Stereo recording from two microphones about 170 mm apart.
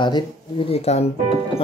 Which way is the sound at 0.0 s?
30° left (ahead or behind).